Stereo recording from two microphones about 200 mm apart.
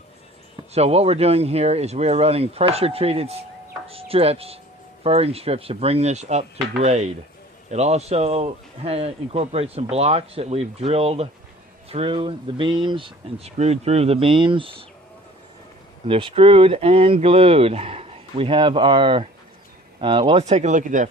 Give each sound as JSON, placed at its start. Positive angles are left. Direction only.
{"t": 0.7, "sound": "speech", "side_deg": -30}
{"t": 16.0, "sound": "speech", "side_deg": -25}